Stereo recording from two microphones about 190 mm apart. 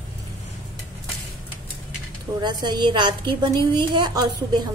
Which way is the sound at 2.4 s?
20° right (ahead or behind).